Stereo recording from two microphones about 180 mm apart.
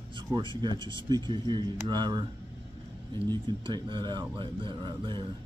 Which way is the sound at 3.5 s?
25° right (ahead or behind).